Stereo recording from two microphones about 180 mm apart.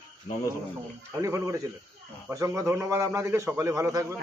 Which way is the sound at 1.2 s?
15° right (ahead or behind).